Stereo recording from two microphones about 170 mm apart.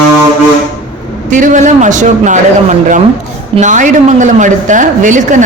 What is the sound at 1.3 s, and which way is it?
A man's voice, 50° right (ahead or behind).